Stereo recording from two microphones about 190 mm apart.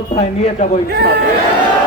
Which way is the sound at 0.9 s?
60° right (ahead or behind).